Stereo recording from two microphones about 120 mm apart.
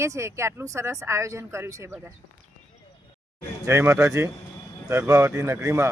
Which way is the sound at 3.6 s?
25° right (ahead or behind).